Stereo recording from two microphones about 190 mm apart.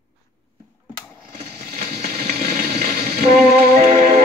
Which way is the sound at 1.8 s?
55° right (ahead or behind).